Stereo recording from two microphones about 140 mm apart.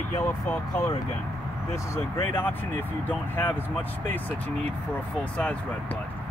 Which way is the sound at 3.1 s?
15° left (ahead or behind).